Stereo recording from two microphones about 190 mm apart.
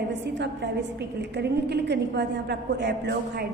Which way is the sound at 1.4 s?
60° right (ahead or behind).